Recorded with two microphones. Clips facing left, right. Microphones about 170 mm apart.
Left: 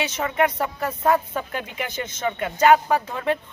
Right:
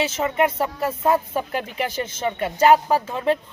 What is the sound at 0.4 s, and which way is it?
Speech, 5° right (ahead or behind).